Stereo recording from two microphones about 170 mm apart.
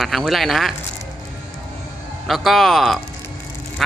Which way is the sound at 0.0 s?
Centre (ahead or behind).